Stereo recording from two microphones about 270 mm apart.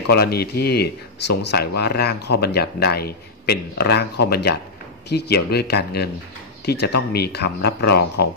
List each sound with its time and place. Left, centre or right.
0.1 s a man's voice: left